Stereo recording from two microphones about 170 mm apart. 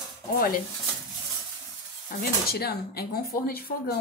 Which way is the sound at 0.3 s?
60° left (ahead or behind).